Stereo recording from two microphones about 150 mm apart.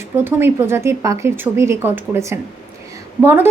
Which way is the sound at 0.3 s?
15° right (ahead or behind).